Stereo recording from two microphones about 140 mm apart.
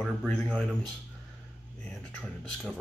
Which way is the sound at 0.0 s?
5° left (ahead or behind).